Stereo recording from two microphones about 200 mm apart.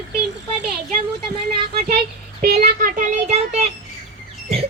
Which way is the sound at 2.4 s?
45° right (ahead or behind).